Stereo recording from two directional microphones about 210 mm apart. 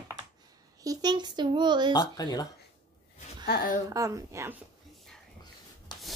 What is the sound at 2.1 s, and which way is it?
Speech, 20° left (ahead or behind).